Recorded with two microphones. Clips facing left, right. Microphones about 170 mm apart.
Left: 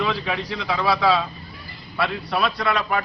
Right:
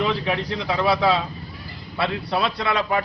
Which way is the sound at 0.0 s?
20° right (ahead or behind).